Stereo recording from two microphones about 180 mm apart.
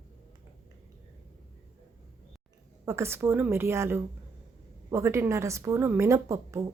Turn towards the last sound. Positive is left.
turn(degrees=-15)  # may be behind; listen again after turning